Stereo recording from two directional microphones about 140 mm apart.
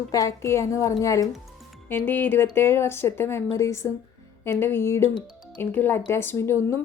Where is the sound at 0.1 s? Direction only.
25° left (ahead or behind).